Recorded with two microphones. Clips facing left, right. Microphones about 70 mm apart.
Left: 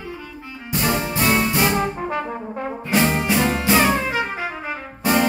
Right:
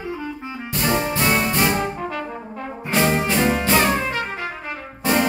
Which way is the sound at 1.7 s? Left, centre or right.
Left.